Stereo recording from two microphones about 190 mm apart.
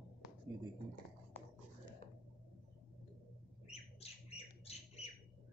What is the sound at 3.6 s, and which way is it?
Bird, 30° left (ahead or behind).